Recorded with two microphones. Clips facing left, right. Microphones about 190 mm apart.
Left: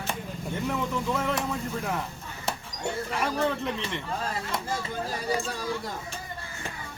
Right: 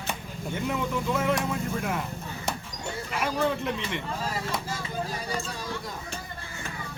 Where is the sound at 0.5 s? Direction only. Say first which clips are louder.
Right 1 dB; 5° right (ahead or behind).